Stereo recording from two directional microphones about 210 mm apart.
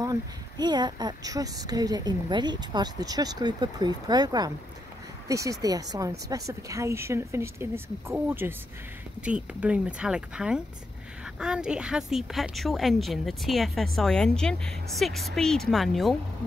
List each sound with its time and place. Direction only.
0.0 s a woman's voice: 20° right (ahead or behind); by 16.2 s centre (ahead or behind)